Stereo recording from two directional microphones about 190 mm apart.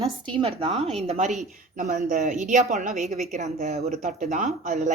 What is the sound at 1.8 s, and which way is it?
Speech, 45° right (ahead or behind).